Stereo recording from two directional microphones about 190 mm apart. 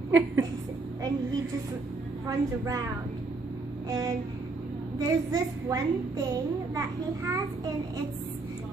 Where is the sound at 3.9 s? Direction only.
20° right (ahead or behind).